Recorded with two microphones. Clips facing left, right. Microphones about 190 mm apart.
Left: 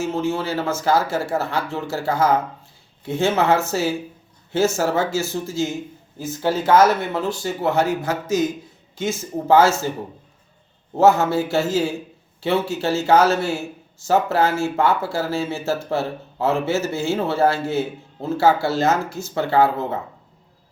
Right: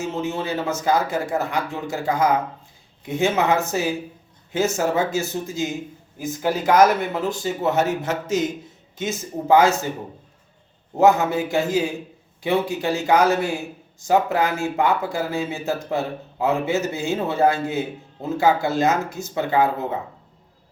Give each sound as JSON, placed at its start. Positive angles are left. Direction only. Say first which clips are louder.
{"t": 0.0, "sound": "a man's voice", "louder": "left 3 dB", "side_deg": -20}
{"t": 11.0, "sound": "a man's voice", "louder": "left 1 dB", "side_deg": -15}